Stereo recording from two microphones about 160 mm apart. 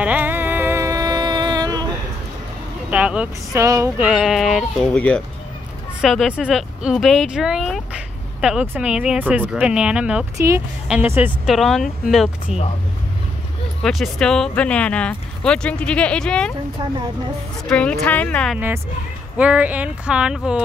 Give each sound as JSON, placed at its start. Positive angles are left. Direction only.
{"t": 0.0, "sound": "music", "side_deg": -10}
{"t": 2.9, "sound": "speech", "side_deg": -10}
{"t": 3.6, "sound": "a sound", "side_deg": -20}
{"t": 4.0, "sound": "speech", "side_deg": -5}
{"t": 11.4, "sound": "speech", "side_deg": 0}
{"t": 13.8, "sound": "speech", "side_deg": 0}
{"t": 17.6, "sound": "speech", "side_deg": 5}
{"t": 19.3, "sound": "speech", "side_deg": -10}